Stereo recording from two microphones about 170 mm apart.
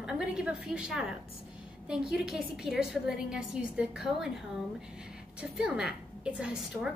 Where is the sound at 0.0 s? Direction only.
5° right (ahead or behind).